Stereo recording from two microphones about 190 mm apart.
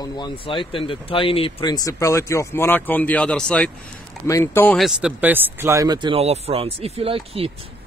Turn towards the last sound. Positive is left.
turn(degrees=-30)  # may be behind; listen again after turning